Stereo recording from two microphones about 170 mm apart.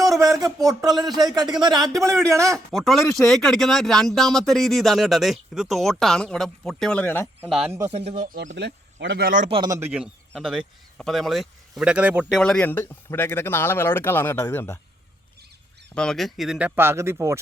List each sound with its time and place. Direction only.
0.2 s speech: 20° right (ahead or behind)
2.7 s speech: centre (ahead or behind)
7.4 s speech: 5° right (ahead or behind)
7.7 s speech: 15° right (ahead or behind)
7.9 s speech: 35° right (ahead or behind)
8.5 s speech: 90° right; by 9.5 s 55° right (ahead or behind)
9.6 s speech: 15° right (ahead or behind)
12.4 s speech: 5° left (ahead or behind)
16.0 s speech: centre (ahead or behind); by 17.3 s 15° right (ahead or behind)